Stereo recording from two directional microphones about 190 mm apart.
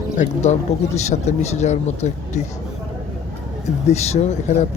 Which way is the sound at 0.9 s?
35° left (ahead or behind).